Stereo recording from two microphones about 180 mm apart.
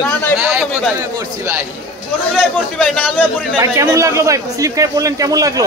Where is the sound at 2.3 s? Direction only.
Centre (ahead or behind).